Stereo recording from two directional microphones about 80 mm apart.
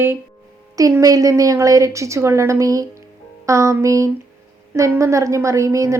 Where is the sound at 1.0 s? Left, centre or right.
Right.